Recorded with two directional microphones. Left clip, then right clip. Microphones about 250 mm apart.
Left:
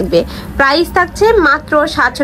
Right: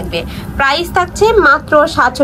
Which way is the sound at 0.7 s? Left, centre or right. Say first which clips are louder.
Left 1 dB; centre.